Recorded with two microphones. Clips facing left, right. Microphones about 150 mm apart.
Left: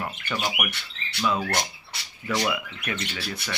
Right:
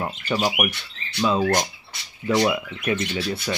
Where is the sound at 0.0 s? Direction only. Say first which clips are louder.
Right 6 dB; 30° right (ahead or behind).